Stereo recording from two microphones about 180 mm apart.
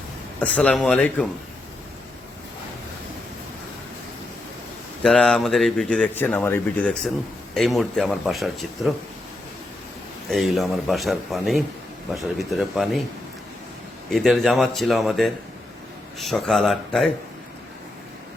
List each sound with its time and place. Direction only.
0.3 s speech: 5° left (ahead or behind)
5.0 s speech: 5° left (ahead or behind)
10.2 s speech: centre (ahead or behind)
14.1 s speech: centre (ahead or behind)